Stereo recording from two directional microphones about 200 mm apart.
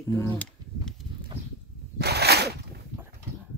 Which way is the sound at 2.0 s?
55° right (ahead or behind).